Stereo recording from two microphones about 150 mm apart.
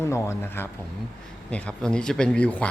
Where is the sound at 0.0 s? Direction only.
20° left (ahead or behind).